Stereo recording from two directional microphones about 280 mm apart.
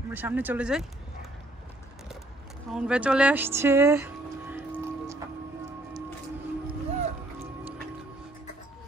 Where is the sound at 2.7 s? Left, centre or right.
Centre.